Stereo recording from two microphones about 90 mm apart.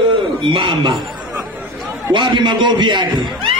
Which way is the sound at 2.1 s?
65° right (ahead or behind).